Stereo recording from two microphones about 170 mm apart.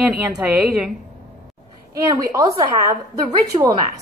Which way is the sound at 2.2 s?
20° right (ahead or behind).